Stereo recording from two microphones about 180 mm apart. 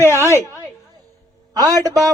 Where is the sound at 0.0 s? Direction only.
15° left (ahead or behind).